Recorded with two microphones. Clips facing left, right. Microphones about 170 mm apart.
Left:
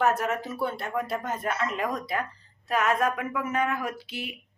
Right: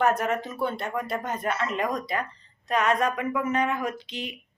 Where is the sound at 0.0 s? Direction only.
5° left (ahead or behind).